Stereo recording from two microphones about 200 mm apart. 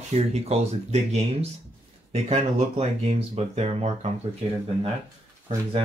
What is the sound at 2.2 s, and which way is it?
Speech, 30° right (ahead or behind).